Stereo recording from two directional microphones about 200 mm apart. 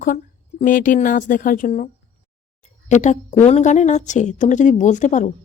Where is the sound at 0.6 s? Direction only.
40° left (ahead or behind).